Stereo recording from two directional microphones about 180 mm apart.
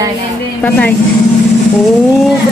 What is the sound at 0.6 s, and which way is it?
Speech, 5° left (ahead or behind).